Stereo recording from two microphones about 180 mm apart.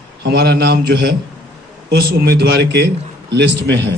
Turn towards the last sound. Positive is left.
turn(degrees=-75)  # may be behind; listen again after turning